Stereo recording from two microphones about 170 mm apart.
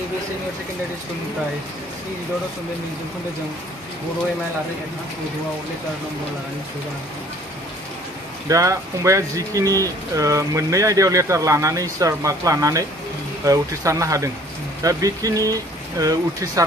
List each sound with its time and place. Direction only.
8.5 s speech: 20° right (ahead or behind)